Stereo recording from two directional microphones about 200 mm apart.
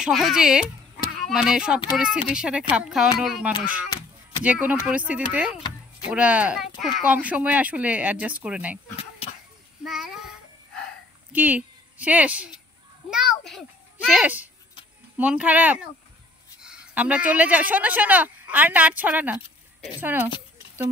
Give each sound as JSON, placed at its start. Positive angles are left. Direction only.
{"t": 0.0, "sound": "speech", "side_deg": 0}
{"t": 9.2, "sound": "a sound", "side_deg": 30}
{"t": 9.8, "sound": "child singing", "side_deg": 0}
{"t": 11.3, "sound": "a child's voice", "side_deg": -10}